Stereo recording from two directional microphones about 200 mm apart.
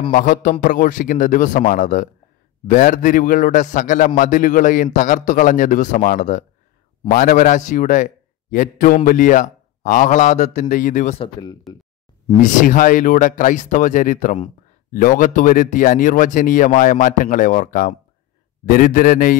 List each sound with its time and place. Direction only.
0.1 s speech: 40° left (ahead or behind)
11.7 s speech: centre (ahead or behind)
12.4 s a man's voice: 40° left (ahead or behind)